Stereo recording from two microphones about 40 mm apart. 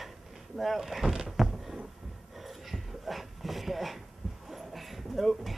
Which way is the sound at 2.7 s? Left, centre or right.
Centre.